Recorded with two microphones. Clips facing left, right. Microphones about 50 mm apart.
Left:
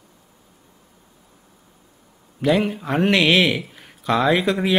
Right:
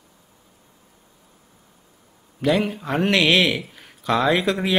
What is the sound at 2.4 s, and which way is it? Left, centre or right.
Speech, centre.